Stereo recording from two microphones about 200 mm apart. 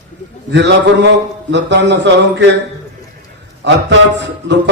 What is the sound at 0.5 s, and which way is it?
A man's voice, 60° right (ahead or behind).